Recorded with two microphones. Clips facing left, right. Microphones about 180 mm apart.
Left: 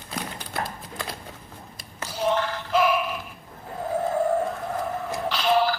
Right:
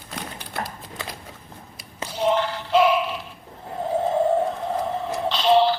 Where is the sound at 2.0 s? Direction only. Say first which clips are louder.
Right 3 dB; 25° right (ahead or behind).